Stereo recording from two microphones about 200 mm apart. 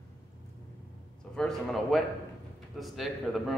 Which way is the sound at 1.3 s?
Centre (ahead or behind).